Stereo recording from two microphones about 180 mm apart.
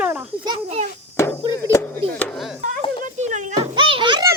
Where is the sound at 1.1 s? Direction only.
15° left (ahead or behind).